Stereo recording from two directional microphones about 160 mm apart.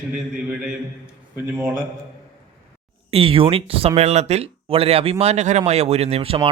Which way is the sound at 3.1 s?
35° right (ahead or behind).